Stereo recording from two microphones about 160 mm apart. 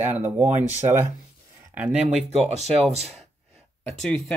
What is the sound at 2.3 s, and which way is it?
Speech, 45° right (ahead or behind).